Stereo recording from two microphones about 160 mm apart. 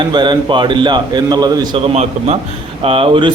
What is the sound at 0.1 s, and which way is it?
A man's voice, 30° right (ahead or behind).